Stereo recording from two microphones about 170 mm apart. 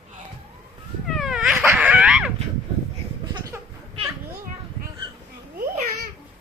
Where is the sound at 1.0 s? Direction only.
Centre (ahead or behind).